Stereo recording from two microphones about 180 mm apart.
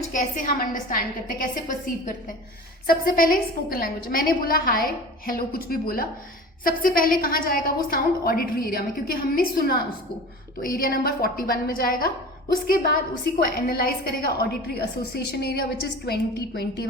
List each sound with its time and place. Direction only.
0.1 s a woman's voice: 50° left (ahead or behind)